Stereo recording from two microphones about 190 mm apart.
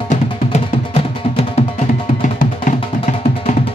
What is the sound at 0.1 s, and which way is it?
Music, 35° left (ahead or behind).